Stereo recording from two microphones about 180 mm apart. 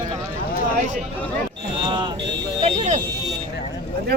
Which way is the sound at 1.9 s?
25° right (ahead or behind).